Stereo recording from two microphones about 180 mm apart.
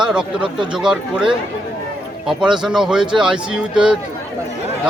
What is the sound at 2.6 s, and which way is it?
Speech, centre (ahead or behind).